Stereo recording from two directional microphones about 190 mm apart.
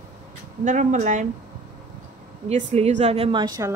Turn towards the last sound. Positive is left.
turn(degrees=-20)  # may be behind; listen again after turning